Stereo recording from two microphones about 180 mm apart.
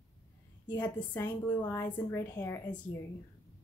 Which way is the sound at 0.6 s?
10° left (ahead or behind).